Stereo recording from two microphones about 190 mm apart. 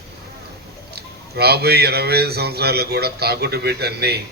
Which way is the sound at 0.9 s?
55° right (ahead or behind).